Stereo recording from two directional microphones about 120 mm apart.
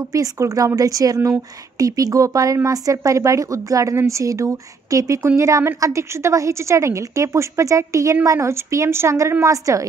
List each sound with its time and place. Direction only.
0.1 s speech: 30° right (ahead or behind)